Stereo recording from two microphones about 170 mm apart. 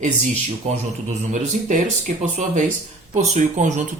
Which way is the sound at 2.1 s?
45° right (ahead or behind).